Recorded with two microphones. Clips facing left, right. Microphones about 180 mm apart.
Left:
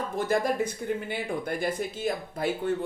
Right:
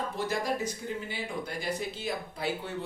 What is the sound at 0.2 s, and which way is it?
A woman's voice, 55° left (ahead or behind).